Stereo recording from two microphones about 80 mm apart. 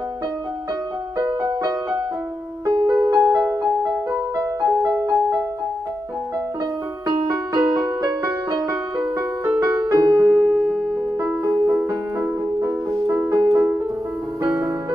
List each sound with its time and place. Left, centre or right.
1.1 s music: right
2.6 s music: right
7.1 s music: right
8.9 s music: right
11.6 s music: right
13.3 s music: right
14.4 s music: right